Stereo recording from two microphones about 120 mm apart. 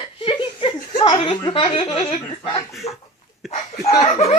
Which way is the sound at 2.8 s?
55° left (ahead or behind).